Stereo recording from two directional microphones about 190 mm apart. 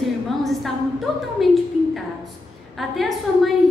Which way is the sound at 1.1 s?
Centre (ahead or behind).